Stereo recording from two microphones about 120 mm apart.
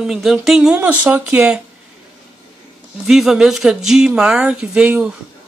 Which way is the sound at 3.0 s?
5° right (ahead or behind).